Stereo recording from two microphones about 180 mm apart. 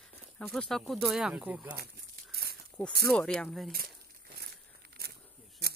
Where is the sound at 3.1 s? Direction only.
5° left (ahead or behind).